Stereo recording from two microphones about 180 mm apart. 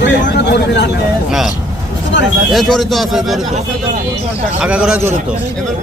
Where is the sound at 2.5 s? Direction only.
Centre (ahead or behind).